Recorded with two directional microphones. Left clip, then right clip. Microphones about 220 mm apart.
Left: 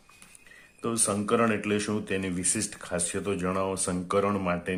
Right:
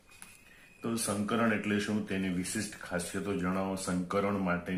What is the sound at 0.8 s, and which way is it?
Speech, 45° left (ahead or behind).